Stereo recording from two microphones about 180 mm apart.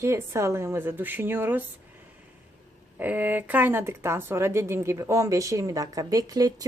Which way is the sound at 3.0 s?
10° right (ahead or behind).